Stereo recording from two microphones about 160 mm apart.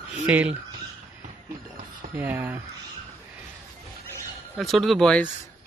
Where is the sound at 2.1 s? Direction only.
10° right (ahead or behind).